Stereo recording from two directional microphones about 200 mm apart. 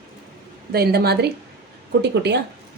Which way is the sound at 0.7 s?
50° right (ahead or behind).